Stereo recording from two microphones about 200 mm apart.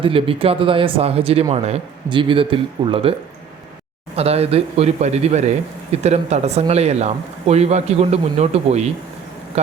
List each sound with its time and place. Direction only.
0.0 s speech: 25° right (ahead or behind)